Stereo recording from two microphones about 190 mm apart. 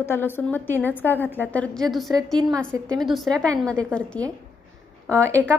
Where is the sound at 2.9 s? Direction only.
Centre (ahead or behind).